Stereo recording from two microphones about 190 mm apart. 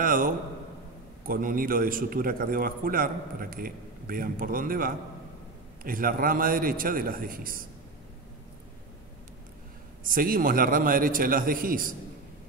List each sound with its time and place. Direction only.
0.0 s a man's voice: 45° right (ahead or behind)
10.0 s a man's voice: 50° right (ahead or behind)